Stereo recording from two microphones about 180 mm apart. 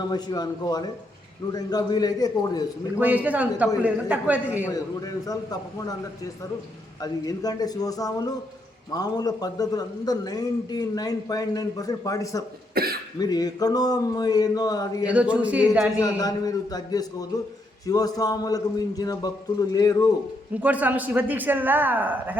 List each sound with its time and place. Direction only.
0.0 s a man's voice: 25° left (ahead or behind)
3.0 s a man's voice: 10° right (ahead or behind)
4.7 s a man's voice: 20° left (ahead or behind)
7.0 s a man's voice: 20° left (ahead or behind)
12.7 s cough: 55° right (ahead or behind)
13.1 s a man's voice: 20° left (ahead or behind)
15.0 s a man's voice: 5° right (ahead or behind)
16.0 s a man's voice: 20° left (ahead or behind)
20.5 s a man's voice: 10° right (ahead or behind)